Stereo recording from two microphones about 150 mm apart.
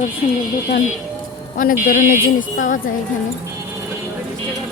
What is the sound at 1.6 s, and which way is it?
Speech, 65° left (ahead or behind).